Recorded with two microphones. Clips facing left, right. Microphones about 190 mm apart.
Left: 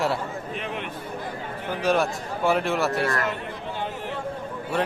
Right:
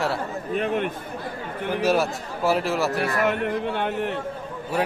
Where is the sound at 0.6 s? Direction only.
50° right (ahead or behind).